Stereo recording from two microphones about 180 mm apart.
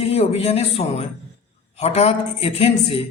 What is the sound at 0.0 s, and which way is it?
A man's voice, 35° left (ahead or behind).